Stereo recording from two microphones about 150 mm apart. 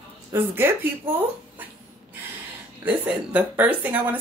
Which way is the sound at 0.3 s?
15° right (ahead or behind).